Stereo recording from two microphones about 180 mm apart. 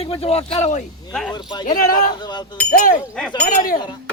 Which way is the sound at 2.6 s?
10° left (ahead or behind).